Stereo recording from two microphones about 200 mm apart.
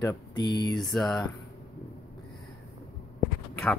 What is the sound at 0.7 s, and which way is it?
Speech, centre (ahead or behind).